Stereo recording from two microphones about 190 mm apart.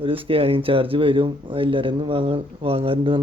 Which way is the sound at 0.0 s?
30° right (ahead or behind).